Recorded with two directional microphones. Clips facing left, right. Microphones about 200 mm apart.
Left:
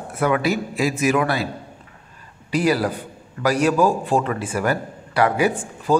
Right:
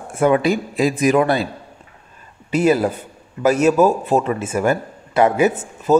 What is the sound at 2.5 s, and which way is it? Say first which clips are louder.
A man's voice: right 4 dB; 25° right (ahead or behind).